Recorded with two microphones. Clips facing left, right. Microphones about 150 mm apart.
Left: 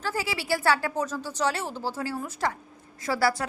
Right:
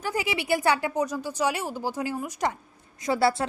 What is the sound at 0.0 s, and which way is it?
A woman's voice, 15° right (ahead or behind).